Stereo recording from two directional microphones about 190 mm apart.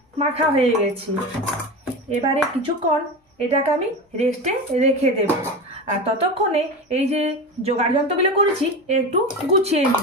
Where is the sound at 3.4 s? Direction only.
30° right (ahead or behind).